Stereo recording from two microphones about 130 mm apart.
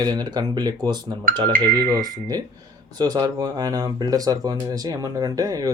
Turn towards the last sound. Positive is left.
turn(degrees=-30)  # may be behind; listen again after turning